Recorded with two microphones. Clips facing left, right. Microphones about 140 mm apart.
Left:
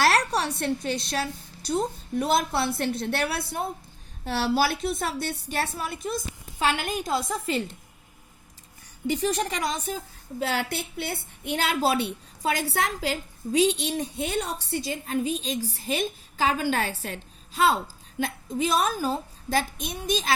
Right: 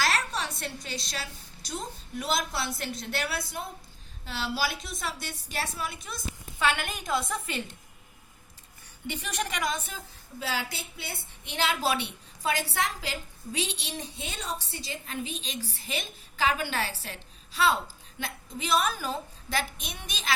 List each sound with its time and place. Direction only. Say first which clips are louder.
0.3 s a woman's voice: left 8 dB; 65° left (ahead or behind)
5.7 s a woman's voice: left 6 dB; 40° left (ahead or behind)
9.0 s a woman's voice: left 8 dB; 35° left (ahead or behind)
10.4 s a woman's voice: left 6 dB; 55° left (ahead or behind)